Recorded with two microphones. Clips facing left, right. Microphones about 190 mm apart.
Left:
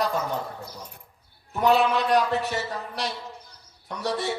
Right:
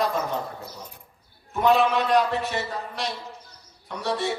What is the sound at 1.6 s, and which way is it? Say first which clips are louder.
A man's voice: right 1 dB; 35° left (ahead or behind).